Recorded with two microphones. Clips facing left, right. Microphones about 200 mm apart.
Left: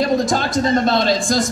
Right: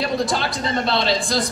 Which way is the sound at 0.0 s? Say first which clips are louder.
Left 4 dB; 45° left (ahead or behind).